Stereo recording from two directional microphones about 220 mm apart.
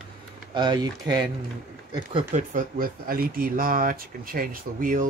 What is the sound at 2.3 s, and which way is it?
Speech, 35° right (ahead or behind).